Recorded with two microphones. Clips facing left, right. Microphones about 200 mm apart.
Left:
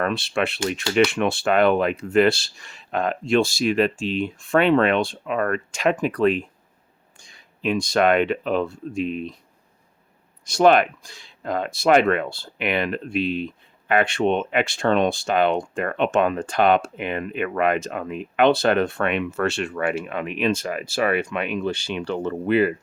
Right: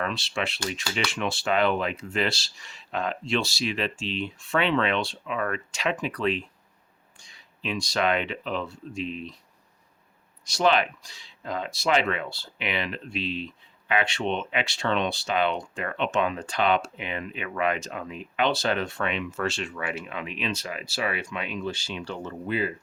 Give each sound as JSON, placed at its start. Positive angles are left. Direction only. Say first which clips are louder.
{"t": 0.0, "sound": "speech", "louder": "left 7 dB", "side_deg": 55}
{"t": 10.4, "sound": "speech", "louder": "left 7 dB", "side_deg": 50}